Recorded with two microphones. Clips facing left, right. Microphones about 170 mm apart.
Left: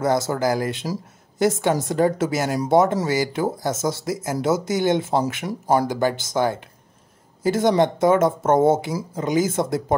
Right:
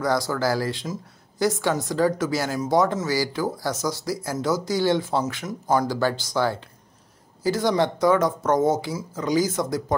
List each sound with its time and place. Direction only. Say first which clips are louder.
0.0 s speech: left 3 dB; 25° left (ahead or behind)
5.9 s speech: left 2 dB; 20° left (ahead or behind)